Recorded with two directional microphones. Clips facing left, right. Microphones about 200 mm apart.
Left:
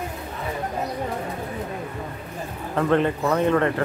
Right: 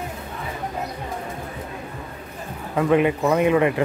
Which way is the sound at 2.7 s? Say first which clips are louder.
Right 2 dB; 10° right (ahead or behind).